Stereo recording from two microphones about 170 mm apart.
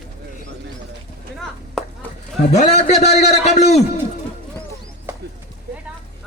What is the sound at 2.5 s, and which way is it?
A man's voice, 40° left (ahead or behind).